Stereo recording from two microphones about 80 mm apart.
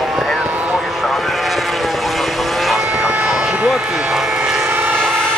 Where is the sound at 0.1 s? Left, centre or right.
Centre.